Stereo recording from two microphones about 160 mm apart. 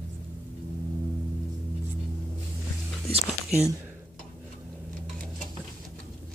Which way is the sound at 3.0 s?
40° right (ahead or behind).